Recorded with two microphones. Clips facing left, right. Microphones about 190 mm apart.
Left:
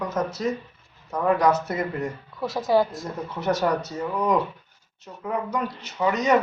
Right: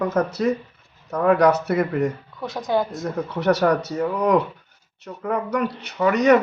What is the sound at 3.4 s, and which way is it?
Speech, 70° right (ahead or behind).